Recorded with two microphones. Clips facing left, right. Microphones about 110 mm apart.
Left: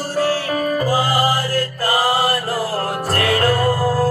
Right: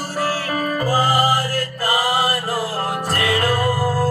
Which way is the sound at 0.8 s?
35° right (ahead or behind).